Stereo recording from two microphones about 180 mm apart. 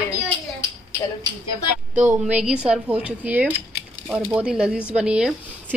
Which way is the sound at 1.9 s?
5° right (ahead or behind).